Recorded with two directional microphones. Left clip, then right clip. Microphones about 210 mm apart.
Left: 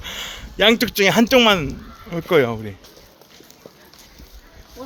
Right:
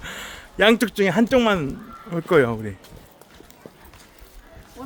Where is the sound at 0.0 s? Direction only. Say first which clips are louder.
Left 4 dB; centre (ahead or behind).